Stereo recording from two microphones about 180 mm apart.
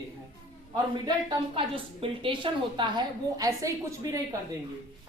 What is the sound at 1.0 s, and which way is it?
A woman's voice, 25° right (ahead or behind).